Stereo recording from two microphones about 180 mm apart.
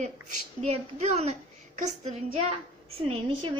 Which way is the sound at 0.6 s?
40° right (ahead or behind).